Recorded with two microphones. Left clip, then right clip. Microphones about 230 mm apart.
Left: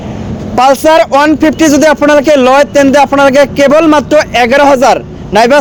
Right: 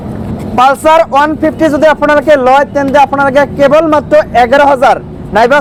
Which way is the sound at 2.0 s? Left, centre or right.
Left.